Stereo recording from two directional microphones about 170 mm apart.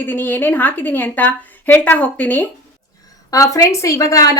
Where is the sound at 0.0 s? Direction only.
10° left (ahead or behind).